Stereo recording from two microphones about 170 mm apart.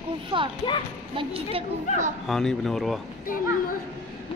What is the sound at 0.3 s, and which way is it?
A child's voice, 25° right (ahead or behind).